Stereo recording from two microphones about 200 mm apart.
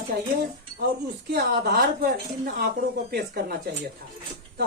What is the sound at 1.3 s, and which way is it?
Speech, 50° right (ahead or behind).